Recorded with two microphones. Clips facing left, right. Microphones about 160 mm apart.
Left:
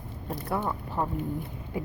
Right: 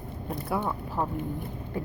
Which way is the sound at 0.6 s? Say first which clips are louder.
Even; centre (ahead or behind).